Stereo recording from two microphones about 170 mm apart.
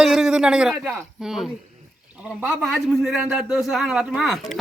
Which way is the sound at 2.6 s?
Centre (ahead or behind).